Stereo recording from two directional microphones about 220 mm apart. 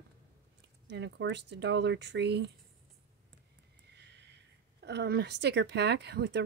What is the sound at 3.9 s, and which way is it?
Speech, 50° right (ahead or behind).